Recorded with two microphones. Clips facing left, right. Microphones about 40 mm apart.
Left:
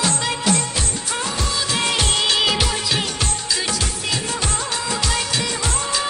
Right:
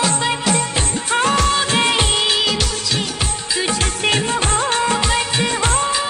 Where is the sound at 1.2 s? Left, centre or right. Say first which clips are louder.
Right 8 dB; right.